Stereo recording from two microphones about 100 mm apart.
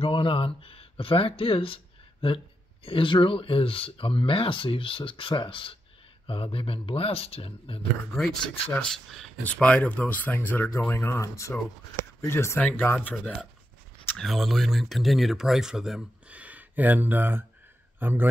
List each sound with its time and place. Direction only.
0.0 s speech: 65° left (ahead or behind)
8.8 s speech: 5° left (ahead or behind); by 12.5 s 30° left (ahead or behind)
12.5 s speech: 15° left (ahead or behind)
14.1 s speech: centre (ahead or behind); by 18.3 s 20° right (ahead or behind)